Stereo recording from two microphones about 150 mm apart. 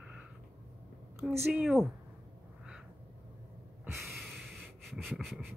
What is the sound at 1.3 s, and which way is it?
Speech, 5° right (ahead or behind).